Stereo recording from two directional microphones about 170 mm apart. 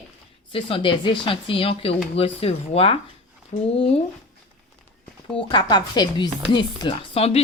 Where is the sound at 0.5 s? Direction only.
30° left (ahead or behind).